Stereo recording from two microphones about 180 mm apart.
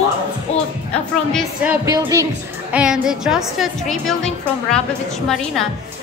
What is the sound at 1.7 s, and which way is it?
Speech, 20° right (ahead or behind).